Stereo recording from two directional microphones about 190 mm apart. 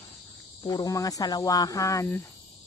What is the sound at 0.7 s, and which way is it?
Speech, 20° left (ahead or behind).